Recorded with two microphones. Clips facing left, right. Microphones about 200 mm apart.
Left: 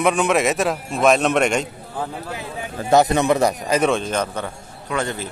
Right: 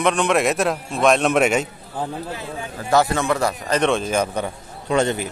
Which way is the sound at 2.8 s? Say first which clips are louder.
Left 3 dB; 20° left (ahead or behind).